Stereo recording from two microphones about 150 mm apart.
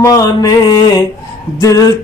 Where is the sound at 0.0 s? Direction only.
25° left (ahead or behind).